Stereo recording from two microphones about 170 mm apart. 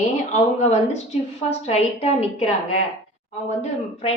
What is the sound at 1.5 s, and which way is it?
Speech, 40° left (ahead or behind).